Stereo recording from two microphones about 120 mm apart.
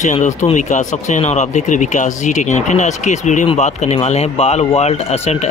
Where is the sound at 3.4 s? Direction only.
65° left (ahead or behind).